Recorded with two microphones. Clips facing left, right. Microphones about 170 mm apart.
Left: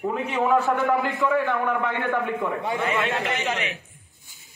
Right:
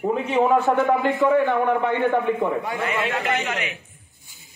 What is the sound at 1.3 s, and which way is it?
Speech, 35° right (ahead or behind).